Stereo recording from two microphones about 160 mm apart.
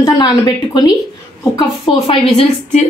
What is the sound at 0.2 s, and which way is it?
A woman's voice, 25° left (ahead or behind).